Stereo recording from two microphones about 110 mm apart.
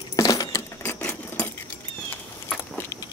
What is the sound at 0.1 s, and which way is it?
Keys jangling, 35° left (ahead or behind).